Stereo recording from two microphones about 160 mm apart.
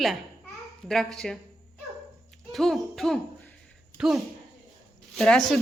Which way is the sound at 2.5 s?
Centre (ahead or behind).